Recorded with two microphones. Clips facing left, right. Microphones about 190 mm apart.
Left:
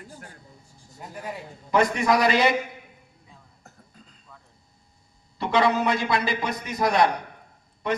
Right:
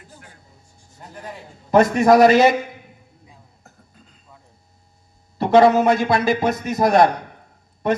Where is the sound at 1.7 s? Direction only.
45° right (ahead or behind).